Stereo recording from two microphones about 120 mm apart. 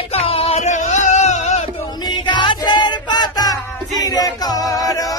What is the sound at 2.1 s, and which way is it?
Music, 40° left (ahead or behind).